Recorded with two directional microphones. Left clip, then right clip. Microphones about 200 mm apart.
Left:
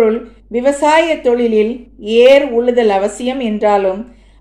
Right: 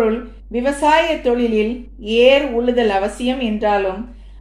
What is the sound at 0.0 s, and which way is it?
A woman's voice, 20° left (ahead or behind).